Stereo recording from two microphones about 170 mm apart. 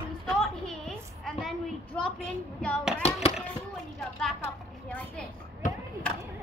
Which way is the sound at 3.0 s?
35° left (ahead or behind).